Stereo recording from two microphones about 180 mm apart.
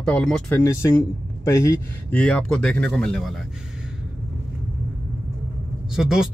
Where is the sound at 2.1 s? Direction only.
5° left (ahead or behind).